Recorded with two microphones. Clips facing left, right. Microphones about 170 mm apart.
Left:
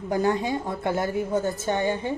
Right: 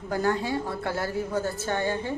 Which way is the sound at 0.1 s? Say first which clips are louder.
Left 2 dB; 20° left (ahead or behind).